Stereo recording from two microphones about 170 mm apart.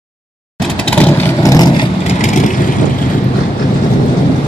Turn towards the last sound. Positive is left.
turn(degrees=45)  # may be behind; listen again after turning